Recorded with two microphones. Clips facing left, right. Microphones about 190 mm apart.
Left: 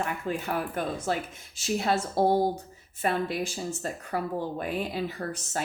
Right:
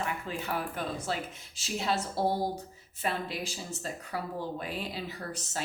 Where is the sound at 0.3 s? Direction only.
50° left (ahead or behind).